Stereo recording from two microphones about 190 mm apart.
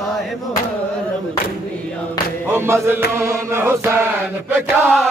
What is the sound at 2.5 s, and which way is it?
Battle cry, 15° right (ahead or behind).